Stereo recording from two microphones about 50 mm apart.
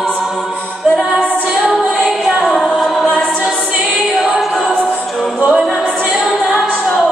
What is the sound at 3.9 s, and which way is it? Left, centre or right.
A capella, centre.